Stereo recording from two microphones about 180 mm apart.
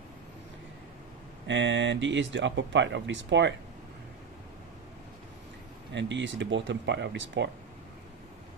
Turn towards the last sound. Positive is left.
turn(degrees=-90)